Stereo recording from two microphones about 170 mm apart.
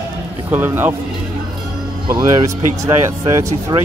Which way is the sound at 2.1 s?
20° right (ahead or behind).